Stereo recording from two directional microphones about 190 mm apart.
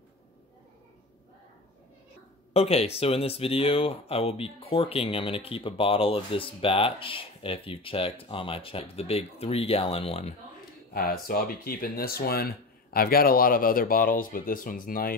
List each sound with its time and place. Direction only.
2.5 s speech: 35° left (ahead or behind)
10.9 s speech: 50° left (ahead or behind)